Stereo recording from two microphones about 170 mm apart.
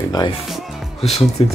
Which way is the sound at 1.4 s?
35° left (ahead or behind).